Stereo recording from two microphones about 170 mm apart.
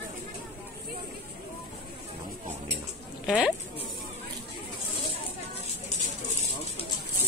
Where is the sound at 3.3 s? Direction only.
5° right (ahead or behind).